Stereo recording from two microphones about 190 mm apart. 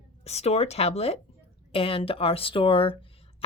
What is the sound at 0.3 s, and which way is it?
A woman's voice, 35° left (ahead or behind).